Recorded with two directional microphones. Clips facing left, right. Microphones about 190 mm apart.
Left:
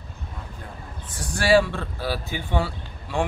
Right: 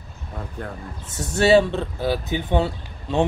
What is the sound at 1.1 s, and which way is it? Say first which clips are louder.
Speech: right 3 dB; 25° right (ahead or behind).